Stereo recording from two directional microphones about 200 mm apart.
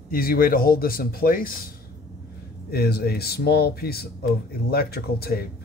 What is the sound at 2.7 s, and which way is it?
Speech, 50° left (ahead or behind).